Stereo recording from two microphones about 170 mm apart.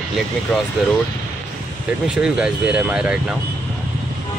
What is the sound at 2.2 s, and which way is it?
Speech, 5° right (ahead or behind).